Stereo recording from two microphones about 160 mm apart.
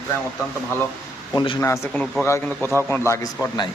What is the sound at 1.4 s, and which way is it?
Speech, 20° left (ahead or behind).